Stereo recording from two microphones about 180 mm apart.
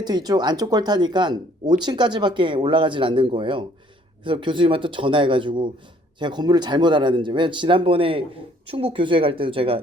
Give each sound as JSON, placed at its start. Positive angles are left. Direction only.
{"t": 0.0, "sound": "speech", "side_deg": -20}